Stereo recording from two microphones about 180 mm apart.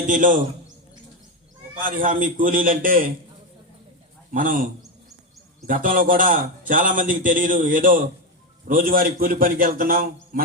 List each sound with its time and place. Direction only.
0.1 s a man's voice: 45° right (ahead or behind)
1.8 s a man's voice: 50° right (ahead or behind)
4.3 s a man's voice: 50° right (ahead or behind)